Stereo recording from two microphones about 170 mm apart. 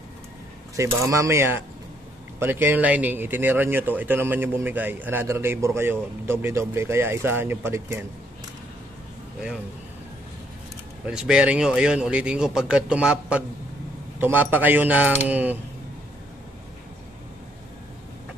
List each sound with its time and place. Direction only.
0.7 s speech: 20° right (ahead or behind)
11.1 s speech: 5° right (ahead or behind)